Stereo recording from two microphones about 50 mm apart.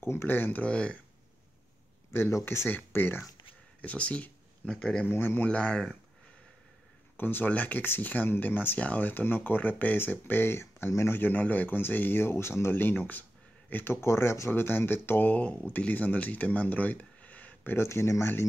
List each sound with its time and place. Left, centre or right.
0.0 s speech: left
0.7 s speech: left
2.7 s speech: left
3.8 s speech: left
4.6 s speech: centre
5.0 s speech: left
5.5 s speech: left
7.2 s speech: left
12.7 s speech: left
14.0 s speech: left
14.5 s speech: left
17.7 s speech: left